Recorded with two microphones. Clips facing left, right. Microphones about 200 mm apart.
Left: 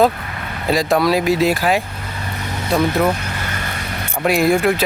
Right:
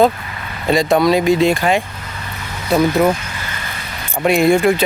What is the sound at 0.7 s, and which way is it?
Speech, centre (ahead or behind).